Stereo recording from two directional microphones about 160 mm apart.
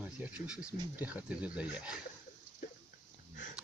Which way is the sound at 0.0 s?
10° right (ahead or behind).